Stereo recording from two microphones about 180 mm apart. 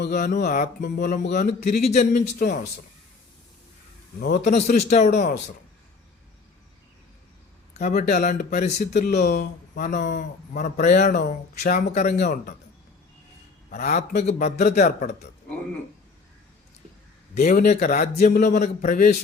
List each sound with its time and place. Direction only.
0.1 s a man's voice: 40° left (ahead or behind)
4.2 s a man's voice: 55° left (ahead or behind)
4.5 s speech: 45° left (ahead or behind)
7.8 s a man's voice: 45° left (ahead or behind)
9.2 s a man's voice: 65° left (ahead or behind)
9.8 s a man's voice: 45° left (ahead or behind)
13.7 s a man's voice: 40° left (ahead or behind)
17.3 s a man's voice: 45° left (ahead or behind)